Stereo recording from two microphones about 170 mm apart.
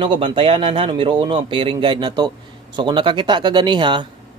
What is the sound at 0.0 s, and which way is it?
Speech, 30° right (ahead or behind).